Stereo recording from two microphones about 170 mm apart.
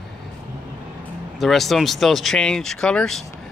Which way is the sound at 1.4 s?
Centre (ahead or behind).